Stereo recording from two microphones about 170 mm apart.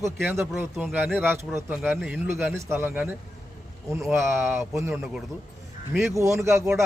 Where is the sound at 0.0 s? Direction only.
15° right (ahead or behind).